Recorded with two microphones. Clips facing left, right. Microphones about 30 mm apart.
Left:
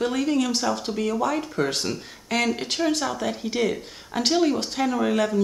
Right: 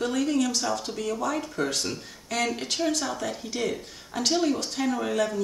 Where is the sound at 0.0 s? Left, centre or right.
Left.